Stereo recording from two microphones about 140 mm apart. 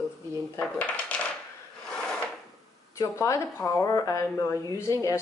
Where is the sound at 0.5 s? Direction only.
10° left (ahead or behind).